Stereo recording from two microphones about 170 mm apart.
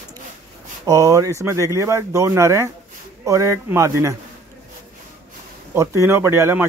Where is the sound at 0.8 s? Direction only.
20° right (ahead or behind).